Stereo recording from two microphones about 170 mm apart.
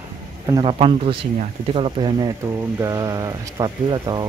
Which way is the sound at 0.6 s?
35° right (ahead or behind).